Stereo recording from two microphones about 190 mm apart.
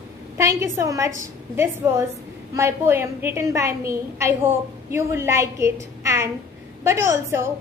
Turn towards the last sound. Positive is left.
turn(degrees=-15)  # may be behind; listen again after turning